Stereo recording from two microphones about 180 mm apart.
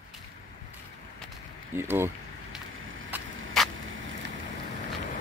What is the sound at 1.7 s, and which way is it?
Speech, 10° right (ahead or behind).